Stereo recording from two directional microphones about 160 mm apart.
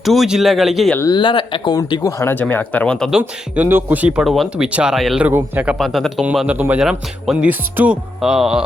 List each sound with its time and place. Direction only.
0.0 s speech: centre (ahead or behind)
0.9 s speech: 25° left (ahead or behind); by 3.1 s 5° left (ahead or behind)
3.1 s speech: 5° right (ahead or behind)